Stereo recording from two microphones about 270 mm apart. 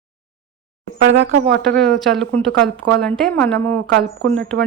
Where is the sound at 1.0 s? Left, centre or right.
Right.